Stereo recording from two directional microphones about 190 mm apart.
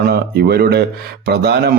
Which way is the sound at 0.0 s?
55° right (ahead or behind).